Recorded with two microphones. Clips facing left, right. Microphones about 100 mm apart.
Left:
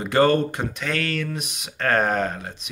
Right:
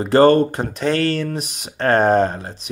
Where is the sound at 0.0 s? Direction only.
35° right (ahead or behind).